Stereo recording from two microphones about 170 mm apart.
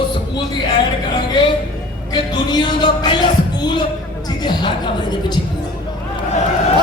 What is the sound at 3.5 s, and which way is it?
Speech, 25° left (ahead or behind).